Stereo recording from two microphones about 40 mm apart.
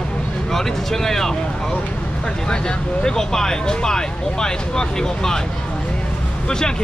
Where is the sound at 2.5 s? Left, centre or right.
Centre.